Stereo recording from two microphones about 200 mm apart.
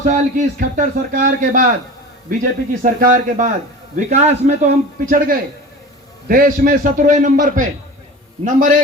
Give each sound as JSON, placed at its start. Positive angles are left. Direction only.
{"t": 0.1, "sound": "a man's voice", "side_deg": -40}